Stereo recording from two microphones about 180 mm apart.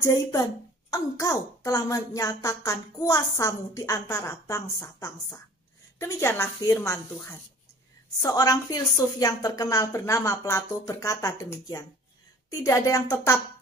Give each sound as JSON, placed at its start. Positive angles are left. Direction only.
{"t": 0.0, "sound": "a woman's voice", "side_deg": 20}